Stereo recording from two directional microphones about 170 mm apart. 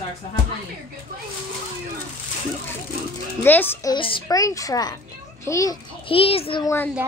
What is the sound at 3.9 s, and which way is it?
A woman's voice, 30° left (ahead or behind).